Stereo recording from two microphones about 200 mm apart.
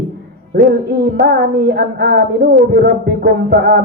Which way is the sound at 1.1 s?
55° right (ahead or behind).